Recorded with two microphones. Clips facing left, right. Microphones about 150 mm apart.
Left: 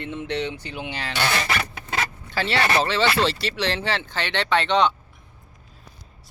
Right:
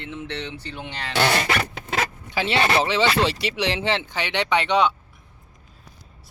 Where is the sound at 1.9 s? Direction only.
15° right (ahead or behind).